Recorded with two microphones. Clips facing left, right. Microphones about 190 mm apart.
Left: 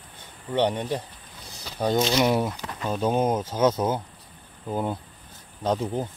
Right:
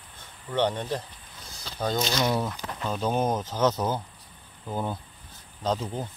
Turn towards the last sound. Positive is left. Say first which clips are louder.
# left 3 dB
turn(degrees=15)  # may be behind; listen again after turning